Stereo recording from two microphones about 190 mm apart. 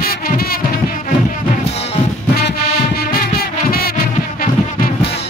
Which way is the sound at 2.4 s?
55° left (ahead or behind).